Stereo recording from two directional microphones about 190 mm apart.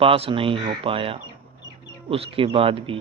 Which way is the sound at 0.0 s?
30° right (ahead or behind).